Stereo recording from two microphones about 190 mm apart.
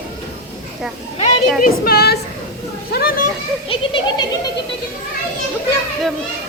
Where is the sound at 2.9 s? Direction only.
55° left (ahead or behind).